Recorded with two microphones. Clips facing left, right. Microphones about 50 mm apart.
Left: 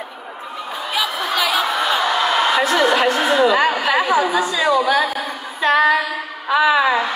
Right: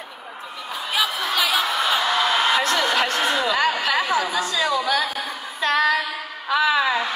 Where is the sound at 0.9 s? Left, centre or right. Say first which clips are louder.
Left 2 dB; centre.